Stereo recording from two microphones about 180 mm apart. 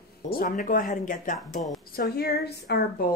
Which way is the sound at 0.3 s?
50° left (ahead or behind).